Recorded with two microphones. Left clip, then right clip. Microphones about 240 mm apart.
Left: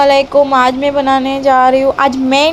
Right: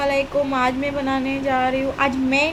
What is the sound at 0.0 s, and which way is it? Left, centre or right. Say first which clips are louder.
A woman's voice: left 12 dB; centre.